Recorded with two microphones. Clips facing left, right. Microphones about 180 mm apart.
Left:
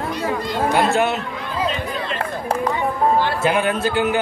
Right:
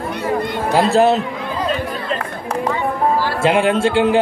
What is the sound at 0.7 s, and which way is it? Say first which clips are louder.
Speech: right 5 dB; 35° right (ahead or behind).